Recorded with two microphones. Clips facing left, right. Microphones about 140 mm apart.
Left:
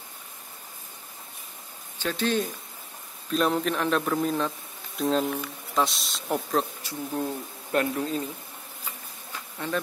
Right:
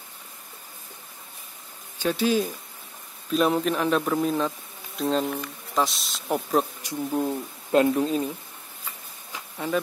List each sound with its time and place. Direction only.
2.0 s speech: 10° right (ahead or behind)
6.8 s speech: 15° right (ahead or behind)
9.3 s insect: 10° right (ahead or behind)